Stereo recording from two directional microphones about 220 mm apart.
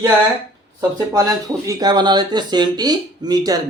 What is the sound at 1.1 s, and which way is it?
Speech, 15° right (ahead or behind).